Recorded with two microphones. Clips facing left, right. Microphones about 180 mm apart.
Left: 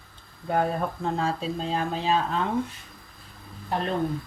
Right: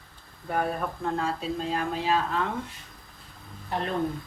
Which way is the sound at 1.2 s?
30° left (ahead or behind).